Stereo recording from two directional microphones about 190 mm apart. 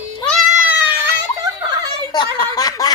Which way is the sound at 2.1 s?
20° left (ahead or behind).